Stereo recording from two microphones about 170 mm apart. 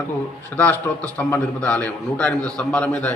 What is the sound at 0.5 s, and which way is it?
A man's voice, 10° left (ahead or behind).